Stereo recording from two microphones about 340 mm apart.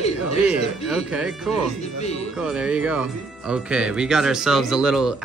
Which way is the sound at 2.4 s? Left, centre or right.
Centre.